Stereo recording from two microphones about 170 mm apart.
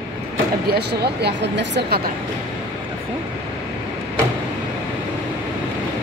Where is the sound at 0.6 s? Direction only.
75° right (ahead or behind).